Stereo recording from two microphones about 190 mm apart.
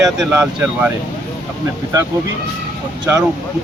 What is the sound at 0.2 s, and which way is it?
Speech, 5° right (ahead or behind).